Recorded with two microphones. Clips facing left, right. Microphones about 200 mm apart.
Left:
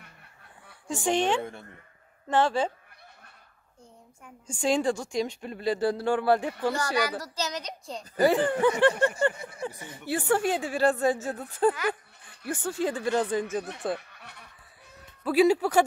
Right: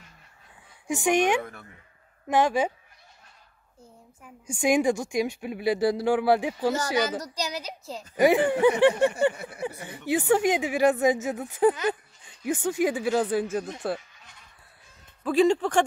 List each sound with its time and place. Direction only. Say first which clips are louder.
0.8 s a woman's voice: right 3 dB; 15° right (ahead or behind)
1.4 s speech: left 2 dB; 25° left (ahead or behind)
2.2 s a woman's voice: right 2 dB; 15° right (ahead or behind)
4.2 s a woman's voice: right 3 dB; 10° right (ahead or behind)
13.9 s goose: even; 65° left (ahead or behind)
15.2 s speech: even; 5° left (ahead or behind)